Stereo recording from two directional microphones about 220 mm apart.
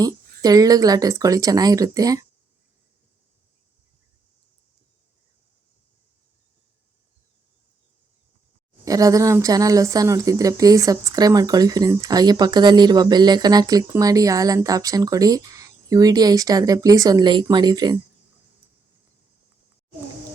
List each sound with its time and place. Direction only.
0.0 s speech: 15° right (ahead or behind)
8.8 s speech: 15° right (ahead or behind)